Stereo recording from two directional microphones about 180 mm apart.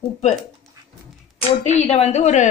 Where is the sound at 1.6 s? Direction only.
40° left (ahead or behind).